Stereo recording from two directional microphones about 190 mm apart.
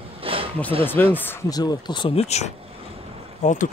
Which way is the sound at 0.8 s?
10° left (ahead or behind).